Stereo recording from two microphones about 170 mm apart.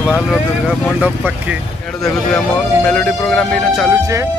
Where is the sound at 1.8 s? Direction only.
5° left (ahead or behind).